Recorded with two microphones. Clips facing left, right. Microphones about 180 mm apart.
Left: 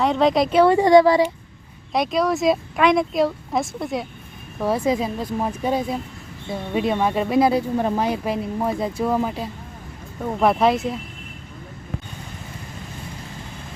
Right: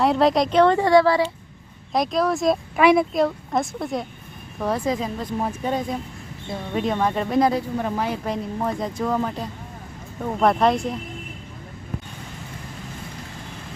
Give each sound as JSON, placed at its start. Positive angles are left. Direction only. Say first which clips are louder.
{"t": 0.0, "sound": "speech", "louder": "even", "side_deg": 0}
{"t": 1.9, "sound": "speech", "louder": "left 1 dB", "side_deg": 0}
{"t": 7.8, "sound": "speech", "louder": "left 4 dB", "side_deg": 30}
{"t": 8.0, "sound": "speech", "louder": "left 3 dB", "side_deg": 10}